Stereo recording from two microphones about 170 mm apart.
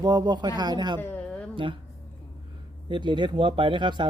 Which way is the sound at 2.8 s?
25° right (ahead or behind).